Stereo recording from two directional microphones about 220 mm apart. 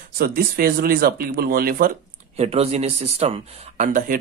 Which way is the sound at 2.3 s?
30° right (ahead or behind).